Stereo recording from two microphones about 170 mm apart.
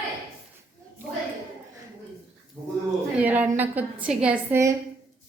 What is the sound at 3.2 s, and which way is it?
A woman's voice, 10° right (ahead or behind).